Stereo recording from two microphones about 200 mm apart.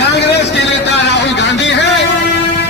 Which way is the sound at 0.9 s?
60° left (ahead or behind).